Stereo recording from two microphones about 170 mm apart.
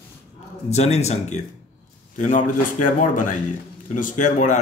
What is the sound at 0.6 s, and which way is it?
A man's voice, 40° left (ahead or behind).